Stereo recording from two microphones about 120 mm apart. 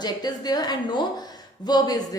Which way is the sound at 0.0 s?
35° left (ahead or behind).